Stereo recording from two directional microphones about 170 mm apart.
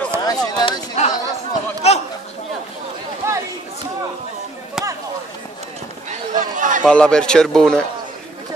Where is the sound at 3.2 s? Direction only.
15° right (ahead or behind).